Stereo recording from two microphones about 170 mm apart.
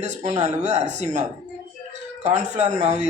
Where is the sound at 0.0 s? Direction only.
45° right (ahead or behind).